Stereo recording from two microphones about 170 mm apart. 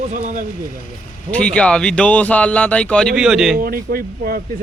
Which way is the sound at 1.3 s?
5° left (ahead or behind).